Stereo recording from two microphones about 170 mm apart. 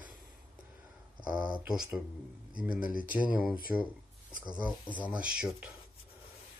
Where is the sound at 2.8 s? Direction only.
55° left (ahead or behind).